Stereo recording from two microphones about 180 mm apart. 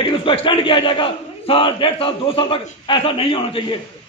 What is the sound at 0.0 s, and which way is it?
A man's voice, 30° left (ahead or behind).